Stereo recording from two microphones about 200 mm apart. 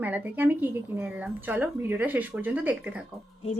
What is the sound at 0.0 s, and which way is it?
Speech, 10° right (ahead or behind).